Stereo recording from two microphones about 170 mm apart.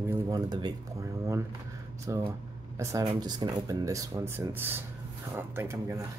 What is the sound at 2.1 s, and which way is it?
Speech, 20° right (ahead or behind).